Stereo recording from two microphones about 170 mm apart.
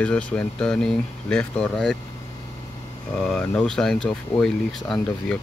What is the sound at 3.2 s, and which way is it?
Speech, 5° left (ahead or behind).